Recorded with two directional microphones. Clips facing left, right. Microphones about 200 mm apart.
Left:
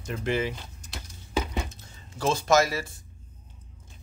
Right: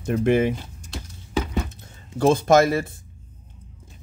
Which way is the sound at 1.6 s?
55° right (ahead or behind).